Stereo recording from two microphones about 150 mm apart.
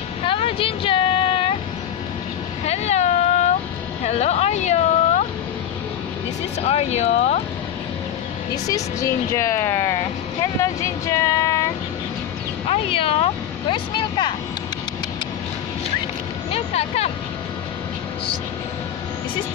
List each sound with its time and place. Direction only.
0.2 s vehicle: 35° left (ahead or behind)
2.6 s a sound: 45° left (ahead or behind)
6.6 s speech: 45° left (ahead or behind)
8.6 s speech: 20° left (ahead or behind)
12.6 s speech: 35° left (ahead or behind)
16.5 s a sound: 45° left (ahead or behind)